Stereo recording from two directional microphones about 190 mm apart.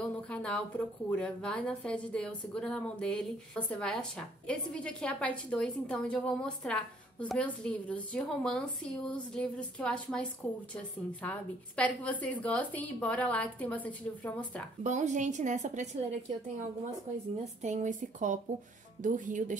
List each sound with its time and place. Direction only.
0.3 s a woman's voice: 5° left (ahead or behind)
14.8 s a woman's voice: 40° right (ahead or behind)
17.6 s a woman's voice: 40° right (ahead or behind)